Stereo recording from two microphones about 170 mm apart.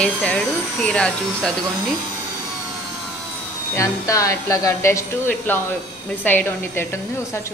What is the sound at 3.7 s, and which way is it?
Speech, 20° left (ahead or behind).